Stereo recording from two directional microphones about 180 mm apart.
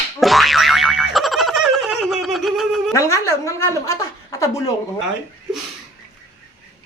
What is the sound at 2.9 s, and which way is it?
A woman's voice, 15° left (ahead or behind).